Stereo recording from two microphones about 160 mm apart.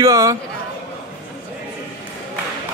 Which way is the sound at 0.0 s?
20° right (ahead or behind).